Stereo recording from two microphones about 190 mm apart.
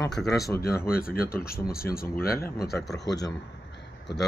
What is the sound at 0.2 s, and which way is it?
Speech, 5° left (ahead or behind).